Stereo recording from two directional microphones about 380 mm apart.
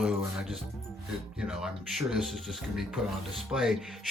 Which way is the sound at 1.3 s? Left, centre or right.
Centre.